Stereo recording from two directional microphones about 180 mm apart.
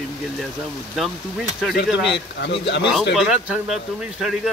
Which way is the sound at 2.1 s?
75° left (ahead or behind).